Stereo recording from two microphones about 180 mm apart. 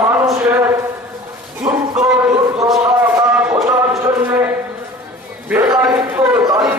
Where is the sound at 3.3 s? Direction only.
10° right (ahead or behind).